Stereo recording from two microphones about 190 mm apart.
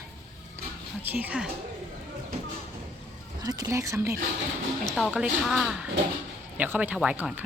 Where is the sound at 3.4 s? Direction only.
20° right (ahead or behind).